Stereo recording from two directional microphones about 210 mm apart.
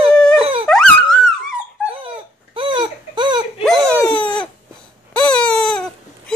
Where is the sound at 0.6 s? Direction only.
5° left (ahead or behind).